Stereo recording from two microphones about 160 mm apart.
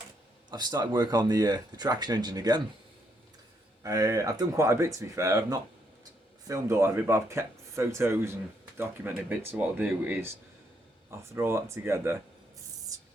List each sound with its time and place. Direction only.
0.5 s speech: 25° right (ahead or behind)
3.8 s speech: 20° right (ahead or behind)